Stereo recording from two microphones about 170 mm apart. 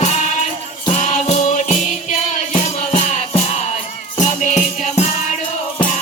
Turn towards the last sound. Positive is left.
turn(degrees=45)  # may be behind; listen again after turning